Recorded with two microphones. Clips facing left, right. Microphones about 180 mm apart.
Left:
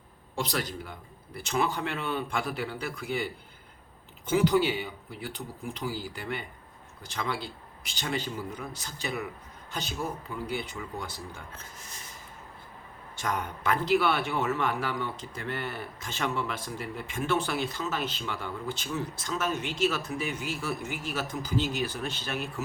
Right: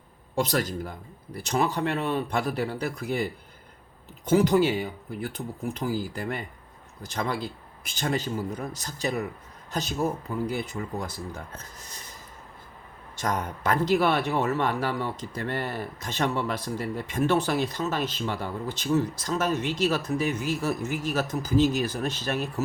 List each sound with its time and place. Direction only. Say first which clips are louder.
0.3 s speech: right 6 dB; 45° right (ahead or behind)
4.3 s a man's voice: right 4 dB; 45° right (ahead or behind)
13.1 s speech: right 3 dB; 40° right (ahead or behind)